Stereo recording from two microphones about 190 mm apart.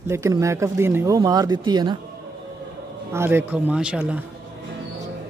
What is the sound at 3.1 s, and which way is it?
Speech, 10° right (ahead or behind).